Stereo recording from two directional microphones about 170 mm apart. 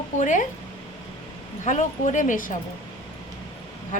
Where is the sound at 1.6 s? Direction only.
45° left (ahead or behind).